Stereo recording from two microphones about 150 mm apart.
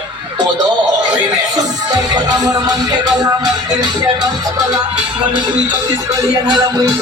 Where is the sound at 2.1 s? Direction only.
25° right (ahead or behind).